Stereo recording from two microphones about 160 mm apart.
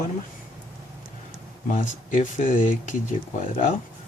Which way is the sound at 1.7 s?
55° left (ahead or behind).